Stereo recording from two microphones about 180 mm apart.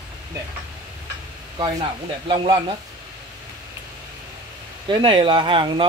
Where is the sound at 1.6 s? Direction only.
25° right (ahead or behind).